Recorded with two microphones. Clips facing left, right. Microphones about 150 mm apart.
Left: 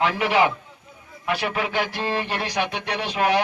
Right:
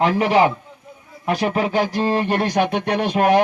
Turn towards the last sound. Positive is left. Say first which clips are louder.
# right 6 dB
turn(degrees=-45)  # may be behind; listen again after turning